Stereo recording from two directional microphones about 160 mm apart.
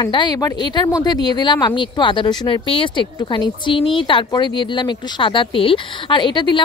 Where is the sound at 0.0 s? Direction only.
25° left (ahead or behind).